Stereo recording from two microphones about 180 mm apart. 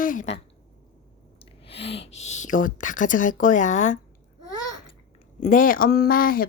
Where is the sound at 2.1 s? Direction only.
40° left (ahead or behind).